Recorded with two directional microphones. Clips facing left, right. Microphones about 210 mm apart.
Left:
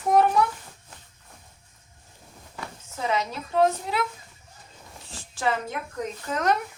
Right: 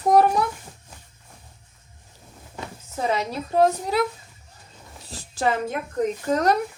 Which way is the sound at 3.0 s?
35° right (ahead or behind).